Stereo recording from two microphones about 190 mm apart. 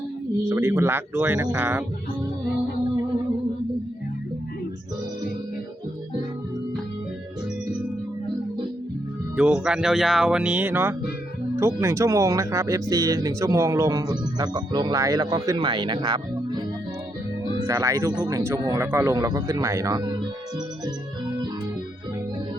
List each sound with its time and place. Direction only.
0.4 s a man's voice: 15° right (ahead or behind)
9.3 s speech: 5° right (ahead or behind); by 16.6 s 20° right (ahead or behind)
17.7 s a man's voice: 15° right (ahead or behind)